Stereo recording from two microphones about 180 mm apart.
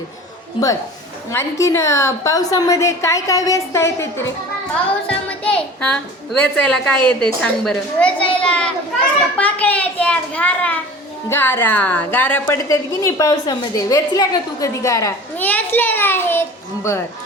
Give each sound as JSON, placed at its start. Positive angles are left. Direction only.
{"t": 1.3, "sound": "a woman's voice", "side_deg": 15}